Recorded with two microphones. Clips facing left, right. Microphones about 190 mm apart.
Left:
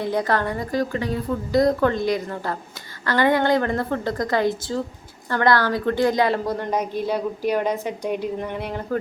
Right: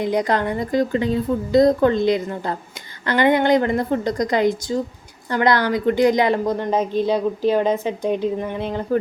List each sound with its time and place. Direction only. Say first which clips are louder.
0.0 s a woman's voice: right 2 dB; 15° right (ahead or behind)